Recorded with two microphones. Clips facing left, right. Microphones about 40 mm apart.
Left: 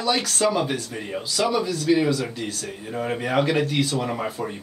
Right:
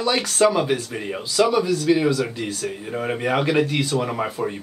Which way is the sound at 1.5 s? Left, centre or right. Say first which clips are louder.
Right 3 dB; centre.